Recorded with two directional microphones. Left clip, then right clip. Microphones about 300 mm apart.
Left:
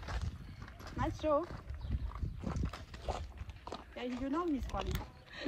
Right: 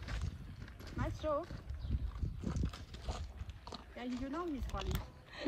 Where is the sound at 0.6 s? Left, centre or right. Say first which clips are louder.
Left 4 dB; centre.